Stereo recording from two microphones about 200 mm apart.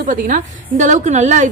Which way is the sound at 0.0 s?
40° right (ahead or behind).